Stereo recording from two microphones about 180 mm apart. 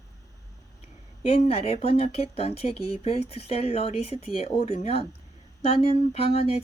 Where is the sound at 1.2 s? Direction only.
35° left (ahead or behind).